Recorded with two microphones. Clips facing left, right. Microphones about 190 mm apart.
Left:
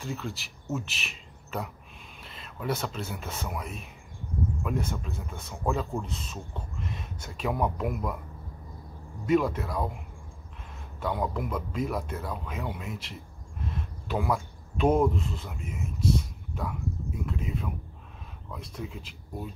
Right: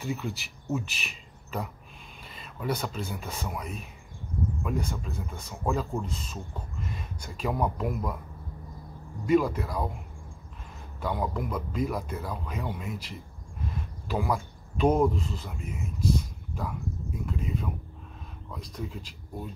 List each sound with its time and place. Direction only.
0.0 s speech: centre (ahead or behind)
9.2 s speech: 5° left (ahead or behind)
11.0 s speech: centre (ahead or behind)